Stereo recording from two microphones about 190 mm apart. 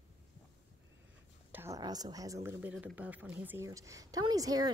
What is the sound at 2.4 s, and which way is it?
A woman's voice, 10° right (ahead or behind).